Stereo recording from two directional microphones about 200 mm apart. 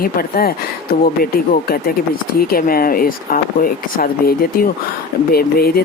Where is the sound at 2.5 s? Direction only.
45° left (ahead or behind).